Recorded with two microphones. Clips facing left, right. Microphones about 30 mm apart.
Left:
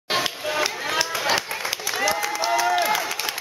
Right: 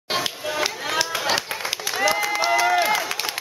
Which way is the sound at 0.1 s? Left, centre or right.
Centre.